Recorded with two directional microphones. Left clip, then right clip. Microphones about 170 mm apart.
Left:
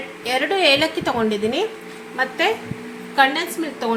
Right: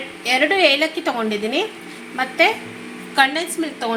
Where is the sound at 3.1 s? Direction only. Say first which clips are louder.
Even; 55° right (ahead or behind).